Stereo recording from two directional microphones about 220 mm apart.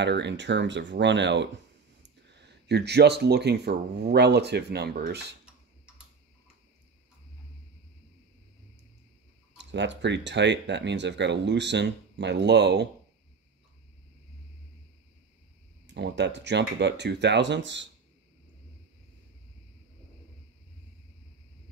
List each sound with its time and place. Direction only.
0.0 s speech: 50° right (ahead or behind)
9.6 s speech: 55° right (ahead or behind)
15.9 s speech: 50° right (ahead or behind)